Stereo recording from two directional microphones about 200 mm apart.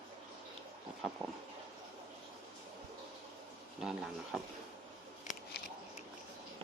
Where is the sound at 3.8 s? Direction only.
5° right (ahead or behind).